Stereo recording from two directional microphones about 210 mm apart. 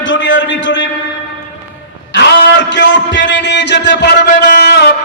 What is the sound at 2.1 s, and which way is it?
A man's voice, 55° left (ahead or behind).